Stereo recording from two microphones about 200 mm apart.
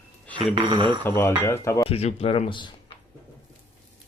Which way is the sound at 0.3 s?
25° right (ahead or behind).